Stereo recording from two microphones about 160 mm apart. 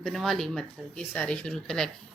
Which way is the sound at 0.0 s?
Centre (ahead or behind).